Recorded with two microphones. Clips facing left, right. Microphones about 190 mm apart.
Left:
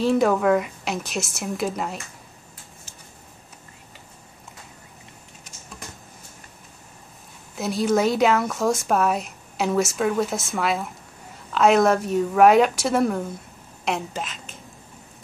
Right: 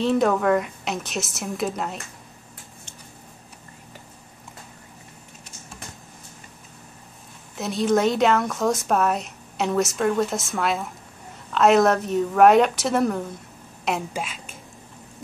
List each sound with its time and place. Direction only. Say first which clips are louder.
0.0 s a woman's voice: left 1 dB; centre (ahead or behind)
7.5 s a woman's voice: even; centre (ahead or behind)